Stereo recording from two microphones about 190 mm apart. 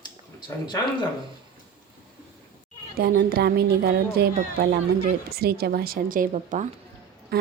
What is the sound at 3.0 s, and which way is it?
Speech, 55° right (ahead or behind).